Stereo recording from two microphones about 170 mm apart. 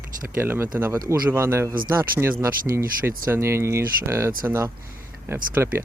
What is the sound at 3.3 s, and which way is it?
Speech, 15° right (ahead or behind).